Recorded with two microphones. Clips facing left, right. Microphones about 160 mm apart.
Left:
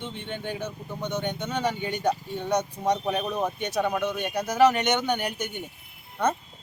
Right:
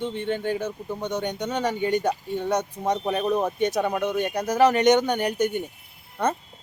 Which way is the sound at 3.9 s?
35° right (ahead or behind).